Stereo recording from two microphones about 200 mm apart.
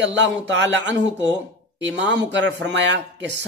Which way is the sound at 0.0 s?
65° right (ahead or behind).